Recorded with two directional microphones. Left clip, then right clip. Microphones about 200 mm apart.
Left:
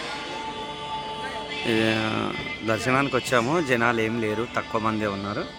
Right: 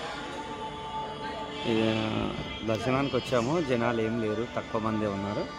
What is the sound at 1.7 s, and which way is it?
Speech, 5° left (ahead or behind).